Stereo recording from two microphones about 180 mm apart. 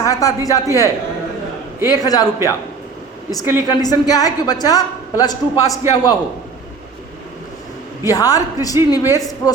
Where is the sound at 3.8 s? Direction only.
20° left (ahead or behind).